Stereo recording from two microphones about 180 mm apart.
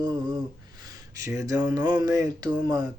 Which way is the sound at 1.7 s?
20° right (ahead or behind).